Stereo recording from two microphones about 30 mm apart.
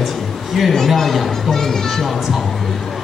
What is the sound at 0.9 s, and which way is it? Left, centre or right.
Speech, centre.